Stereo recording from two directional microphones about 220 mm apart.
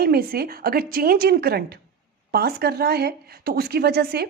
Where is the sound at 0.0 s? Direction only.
45° right (ahead or behind).